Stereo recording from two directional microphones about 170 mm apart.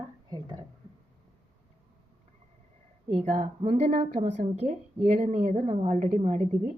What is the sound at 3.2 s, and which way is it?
A woman's voice, 45° right (ahead or behind).